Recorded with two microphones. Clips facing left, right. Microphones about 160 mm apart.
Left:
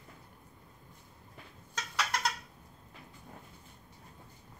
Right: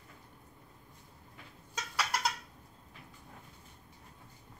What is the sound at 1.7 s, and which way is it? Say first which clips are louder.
Bird: even; 10° right (ahead or behind).